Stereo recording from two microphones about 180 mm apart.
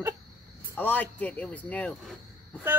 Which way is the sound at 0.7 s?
10° left (ahead or behind).